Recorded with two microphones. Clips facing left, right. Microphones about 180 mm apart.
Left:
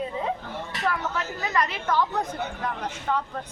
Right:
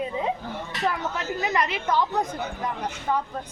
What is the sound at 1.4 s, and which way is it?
Speech, 20° right (ahead or behind).